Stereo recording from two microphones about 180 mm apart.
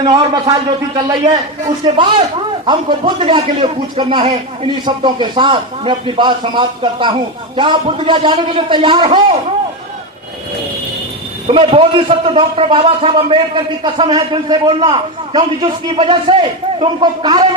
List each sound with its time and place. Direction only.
0.0 s a man's voice: 25° right (ahead or behind)
11.4 s a man's voice: 30° right (ahead or behind)